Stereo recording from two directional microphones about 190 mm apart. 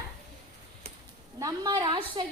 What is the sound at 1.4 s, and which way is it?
Speech, 20° right (ahead or behind).